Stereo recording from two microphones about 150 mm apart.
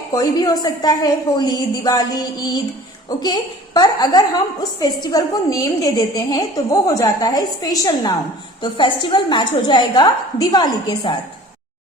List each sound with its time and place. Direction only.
0.1 s a woman's voice: 25° left (ahead or behind)